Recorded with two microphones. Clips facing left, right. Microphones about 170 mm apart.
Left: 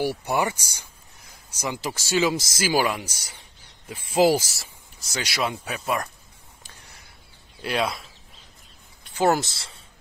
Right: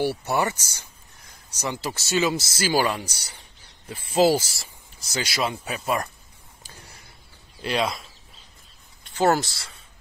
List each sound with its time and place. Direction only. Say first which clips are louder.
0.0 s speech: even; 15° left (ahead or behind)
4.1 s speech: even; 10° left (ahead or behind)
5.0 s speech: right 1 dB; centre (ahead or behind)
7.6 s speech: right 1 dB; 5° left (ahead or behind)
9.1 s speech: even; 15° left (ahead or behind)